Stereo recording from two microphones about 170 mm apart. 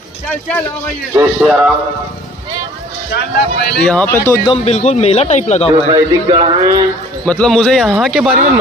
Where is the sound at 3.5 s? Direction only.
80° left.